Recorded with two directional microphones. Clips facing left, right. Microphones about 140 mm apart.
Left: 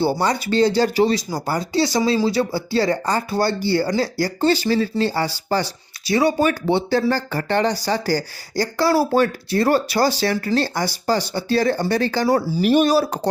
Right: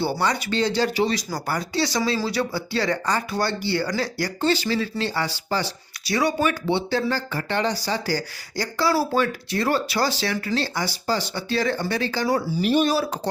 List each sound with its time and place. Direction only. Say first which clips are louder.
0.0 s speech: left 4 dB; 35° left (ahead or behind)
1.1 s speech: left 4 dB; 25° left (ahead or behind)
6.1 s speech: left 4 dB; 30° left (ahead or behind)